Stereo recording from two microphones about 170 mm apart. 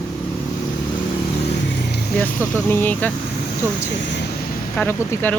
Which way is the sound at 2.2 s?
10° left (ahead or behind).